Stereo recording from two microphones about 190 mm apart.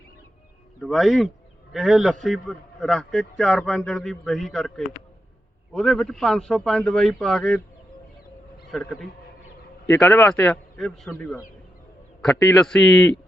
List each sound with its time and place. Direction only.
0.8 s a man's voice: centre (ahead or behind)
5.7 s a man's voice: 5° left (ahead or behind)
8.7 s a man's voice: centre (ahead or behind)
9.8 s a man's voice: 10° left (ahead or behind)
12.3 s a man's voice: 15° left (ahead or behind)
12.6 s a man's voice: 5° left (ahead or behind)